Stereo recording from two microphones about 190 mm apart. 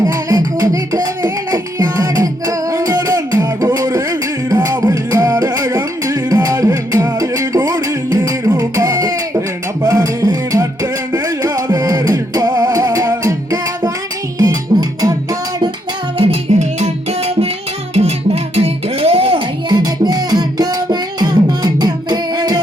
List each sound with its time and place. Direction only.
0.0 s music: 20° right (ahead or behind)
18.5 s music: 30° right (ahead or behind)